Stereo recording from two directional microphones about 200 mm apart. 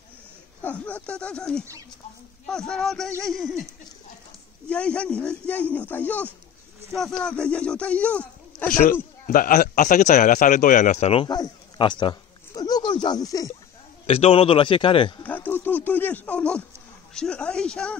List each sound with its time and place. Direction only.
0.6 s speech: 10° left (ahead or behind)
4.6 s speech: 5° left (ahead or behind)
8.6 s a man's voice: 40° left (ahead or behind); by 13.6 s 15° left (ahead or behind)
14.0 s a man's voice: 30° left (ahead or behind)
15.2 s speech: 10° left (ahead or behind)